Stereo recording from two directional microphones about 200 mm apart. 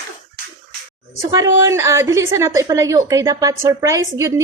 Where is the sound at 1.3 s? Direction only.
15° right (ahead or behind).